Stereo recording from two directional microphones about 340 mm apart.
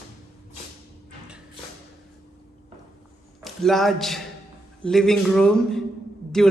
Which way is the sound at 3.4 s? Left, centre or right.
Centre.